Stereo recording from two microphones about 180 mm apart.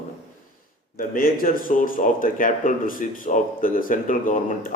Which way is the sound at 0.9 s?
55° left (ahead or behind).